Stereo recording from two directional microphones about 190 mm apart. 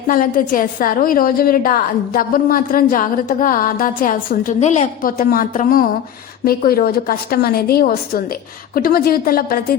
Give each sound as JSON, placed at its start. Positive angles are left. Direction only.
{"t": 0.1, "sound": "a woman's voice", "side_deg": 45}